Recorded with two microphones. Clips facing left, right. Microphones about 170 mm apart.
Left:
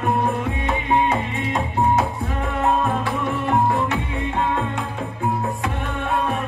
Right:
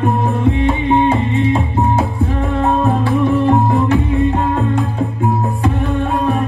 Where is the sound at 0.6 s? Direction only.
30° right (ahead or behind).